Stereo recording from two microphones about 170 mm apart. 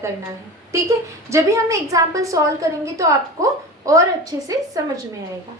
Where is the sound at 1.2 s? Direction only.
20° right (ahead or behind).